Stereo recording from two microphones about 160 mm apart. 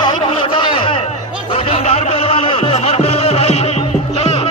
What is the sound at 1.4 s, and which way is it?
Music, 35° left (ahead or behind).